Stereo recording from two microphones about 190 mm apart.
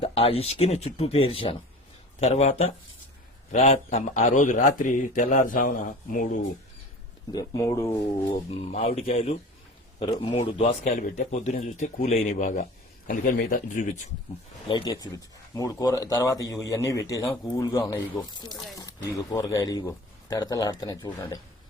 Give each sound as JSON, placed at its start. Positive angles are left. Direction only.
{"t": 0.0, "sound": "a man's voice", "side_deg": 30}
{"t": 7.3, "sound": "speech", "side_deg": 20}
{"t": 8.4, "sound": "a man's voice", "side_deg": 30}
{"t": 15.0, "sound": "speech", "side_deg": 20}